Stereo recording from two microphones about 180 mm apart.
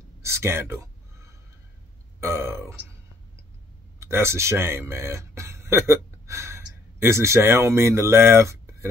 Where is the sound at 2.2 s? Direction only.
15° right (ahead or behind).